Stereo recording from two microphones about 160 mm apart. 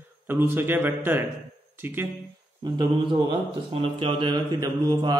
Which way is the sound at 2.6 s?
25° right (ahead or behind).